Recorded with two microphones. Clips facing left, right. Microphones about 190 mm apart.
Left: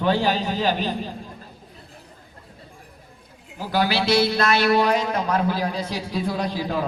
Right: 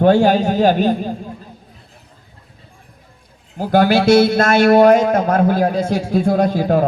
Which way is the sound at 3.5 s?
50° right (ahead or behind).